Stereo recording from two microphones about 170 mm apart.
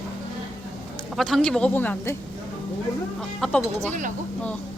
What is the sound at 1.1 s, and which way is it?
A woman's voice, 5° left (ahead or behind).